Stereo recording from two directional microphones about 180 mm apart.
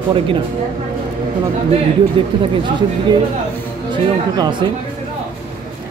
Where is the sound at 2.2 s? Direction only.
30° right (ahead or behind).